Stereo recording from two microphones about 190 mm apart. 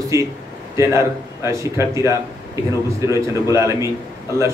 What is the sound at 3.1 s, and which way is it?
Mantra, 15° right (ahead or behind).